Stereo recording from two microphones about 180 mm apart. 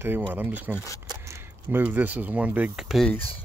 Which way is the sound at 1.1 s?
15° right (ahead or behind).